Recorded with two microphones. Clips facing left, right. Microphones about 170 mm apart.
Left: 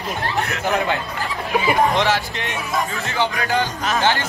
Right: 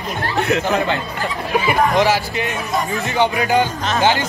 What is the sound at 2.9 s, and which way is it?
Speech, 20° right (ahead or behind).